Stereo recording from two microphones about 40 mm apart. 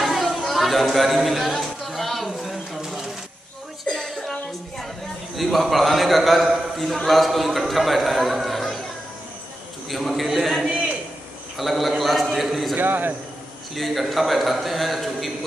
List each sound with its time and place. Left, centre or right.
0.0 s chatter: centre
3.8 s a sound: centre
5.3 s a man's voice: centre
9.8 s a man's voice: centre
12.7 s a man's voice: right
13.7 s a man's voice: centre